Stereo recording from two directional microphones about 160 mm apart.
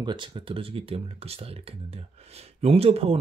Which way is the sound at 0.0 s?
30° right (ahead or behind).